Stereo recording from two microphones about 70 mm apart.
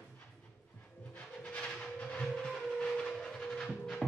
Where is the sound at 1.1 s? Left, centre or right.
Centre.